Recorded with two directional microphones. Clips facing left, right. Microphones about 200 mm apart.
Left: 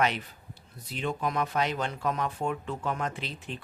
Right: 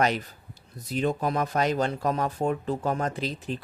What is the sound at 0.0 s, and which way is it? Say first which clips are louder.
Speech: right 3 dB; 40° right (ahead or behind).